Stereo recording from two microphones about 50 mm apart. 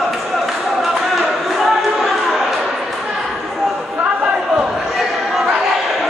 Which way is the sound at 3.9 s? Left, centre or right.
Right.